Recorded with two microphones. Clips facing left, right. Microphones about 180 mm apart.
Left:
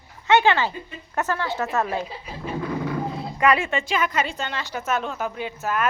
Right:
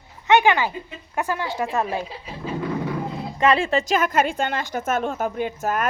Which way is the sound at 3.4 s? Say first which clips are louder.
Right 2 dB; 30° right (ahead or behind).